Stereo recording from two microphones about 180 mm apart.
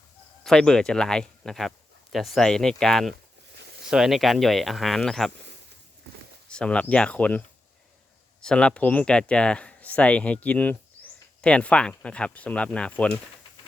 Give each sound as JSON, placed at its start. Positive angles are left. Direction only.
{"t": 0.4, "sound": "speech", "side_deg": 5}
{"t": 3.5, "sound": "a sound", "side_deg": -70}
{"t": 3.8, "sound": "speech", "side_deg": -5}
{"t": 6.5, "sound": "speech", "side_deg": 5}